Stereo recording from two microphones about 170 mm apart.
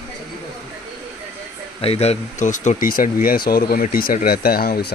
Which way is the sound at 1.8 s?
35° left (ahead or behind).